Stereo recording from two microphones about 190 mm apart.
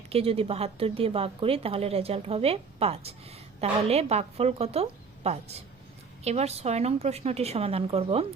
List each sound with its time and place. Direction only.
0.1 s a woman's voice: 30° right (ahead or behind)